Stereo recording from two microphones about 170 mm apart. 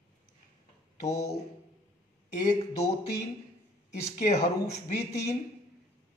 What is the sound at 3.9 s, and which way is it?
Speech, 40° left (ahead or behind).